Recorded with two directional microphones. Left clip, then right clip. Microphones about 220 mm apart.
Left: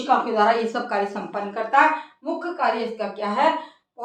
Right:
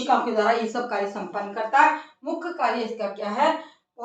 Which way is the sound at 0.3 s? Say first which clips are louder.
Left 3 dB; 30° left (ahead or behind).